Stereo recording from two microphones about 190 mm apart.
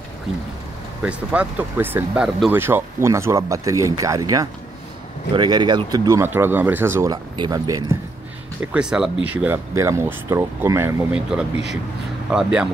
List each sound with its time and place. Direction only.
1.0 s speech: 5° right (ahead or behind)
8.5 s speech: 5° right (ahead or behind)